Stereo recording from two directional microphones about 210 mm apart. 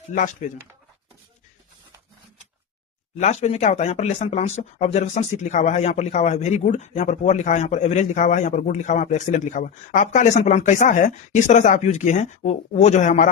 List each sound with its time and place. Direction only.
0.1 s speech: 35° left (ahead or behind)
3.2 s speech: 30° left (ahead or behind)